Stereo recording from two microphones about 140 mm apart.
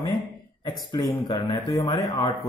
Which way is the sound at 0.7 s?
30° left (ahead or behind).